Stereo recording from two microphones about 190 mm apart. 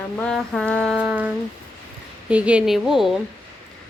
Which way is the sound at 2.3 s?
5° right (ahead or behind).